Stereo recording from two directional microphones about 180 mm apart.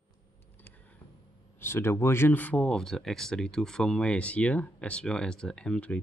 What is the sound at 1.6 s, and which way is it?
Speech, 15° left (ahead or behind).